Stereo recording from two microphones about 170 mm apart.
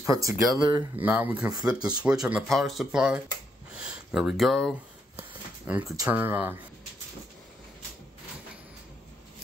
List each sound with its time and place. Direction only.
0.0 s speech: 20° right (ahead or behind)
0.9 s speech: 10° right (ahead or behind)
1.8 s speech: 25° right (ahead or behind)
2.0 s speech: 5° right (ahead or behind)